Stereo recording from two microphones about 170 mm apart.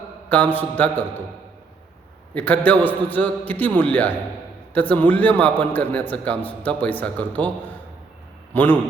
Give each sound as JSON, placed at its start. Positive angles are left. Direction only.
{"t": 0.3, "sound": "a man's voice", "side_deg": 10}
{"t": 2.3, "sound": "a man's voice", "side_deg": 10}
{"t": 8.5, "sound": "a man's voice", "side_deg": 10}